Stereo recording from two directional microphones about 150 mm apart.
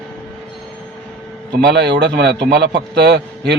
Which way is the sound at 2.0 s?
90° right.